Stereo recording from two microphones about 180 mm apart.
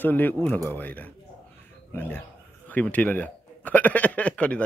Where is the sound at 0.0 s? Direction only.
10° left (ahead or behind).